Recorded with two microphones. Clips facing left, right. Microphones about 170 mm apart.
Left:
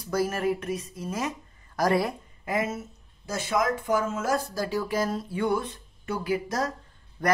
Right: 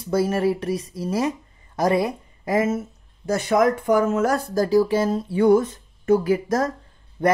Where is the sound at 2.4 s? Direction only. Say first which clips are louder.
Right 7 dB; 45° right (ahead or behind).